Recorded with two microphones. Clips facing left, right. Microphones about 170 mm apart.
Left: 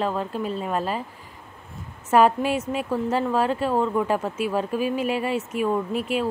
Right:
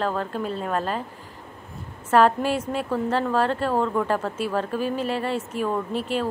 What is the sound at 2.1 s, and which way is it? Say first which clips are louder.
Speech: even; 10° left (ahead or behind).